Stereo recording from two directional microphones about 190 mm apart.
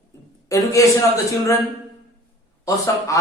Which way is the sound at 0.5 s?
15° left (ahead or behind).